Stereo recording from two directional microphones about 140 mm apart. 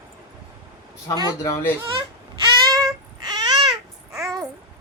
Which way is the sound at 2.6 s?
25° right (ahead or behind).